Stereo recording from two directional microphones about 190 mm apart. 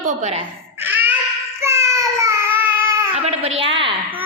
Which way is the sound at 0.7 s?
10° right (ahead or behind).